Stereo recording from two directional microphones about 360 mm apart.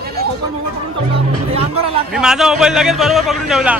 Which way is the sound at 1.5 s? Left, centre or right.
Centre.